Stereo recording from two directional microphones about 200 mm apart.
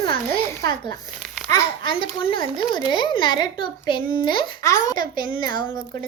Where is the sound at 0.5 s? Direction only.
15° left (ahead or behind).